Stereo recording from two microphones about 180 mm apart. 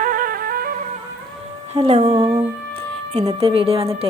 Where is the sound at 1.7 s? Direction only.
30° right (ahead or behind).